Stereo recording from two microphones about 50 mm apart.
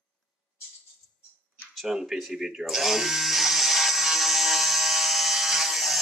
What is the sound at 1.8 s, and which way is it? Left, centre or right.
Speech, centre.